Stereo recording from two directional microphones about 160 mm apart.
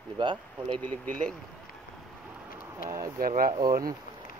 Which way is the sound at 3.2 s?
60° right (ahead or behind).